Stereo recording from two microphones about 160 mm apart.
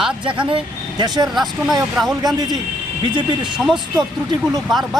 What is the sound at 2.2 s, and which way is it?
A man's voice, 25° right (ahead or behind).